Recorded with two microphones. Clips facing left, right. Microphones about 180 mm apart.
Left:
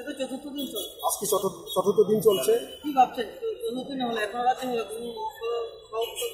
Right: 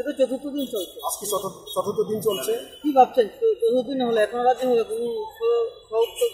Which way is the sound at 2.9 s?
40° right (ahead or behind).